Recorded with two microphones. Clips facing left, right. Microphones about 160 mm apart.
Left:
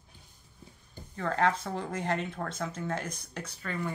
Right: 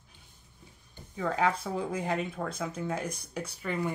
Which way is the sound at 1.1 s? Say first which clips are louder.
Even; 5° right (ahead or behind).